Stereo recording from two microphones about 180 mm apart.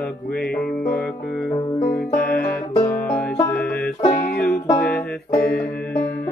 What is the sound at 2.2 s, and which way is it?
Music, 55° left (ahead or behind).